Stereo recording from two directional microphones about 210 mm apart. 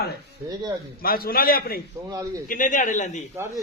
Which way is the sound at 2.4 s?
40° left (ahead or behind).